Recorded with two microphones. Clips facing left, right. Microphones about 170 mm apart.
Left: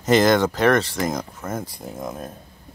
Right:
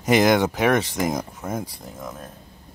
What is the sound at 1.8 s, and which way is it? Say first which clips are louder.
Speech: left 5 dB; 15° left (ahead or behind).